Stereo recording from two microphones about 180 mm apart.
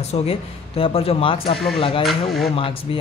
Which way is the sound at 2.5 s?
30° left (ahead or behind).